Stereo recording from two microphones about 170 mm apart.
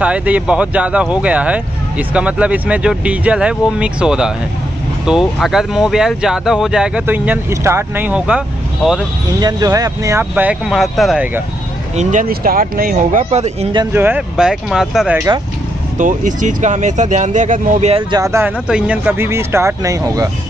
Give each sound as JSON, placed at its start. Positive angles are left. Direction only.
{"t": 0.0, "sound": "speech", "side_deg": -10}
{"t": 9.4, "sound": "speech", "side_deg": -20}
{"t": 12.0, "sound": "speech", "side_deg": -50}
{"t": 13.9, "sound": "speech", "side_deg": -10}
{"t": 16.0, "sound": "speech", "side_deg": -50}
{"t": 18.1, "sound": "speech", "side_deg": -15}
{"t": 18.7, "sound": "speech", "side_deg": -5}